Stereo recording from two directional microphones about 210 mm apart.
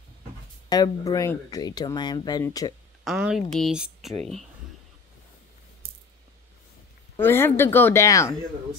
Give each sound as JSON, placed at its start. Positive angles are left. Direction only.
{"t": 0.7, "sound": "speech", "side_deg": 15}
{"t": 3.0, "sound": "a woman's voice", "side_deg": -5}
{"t": 7.2, "sound": "speech", "side_deg": 10}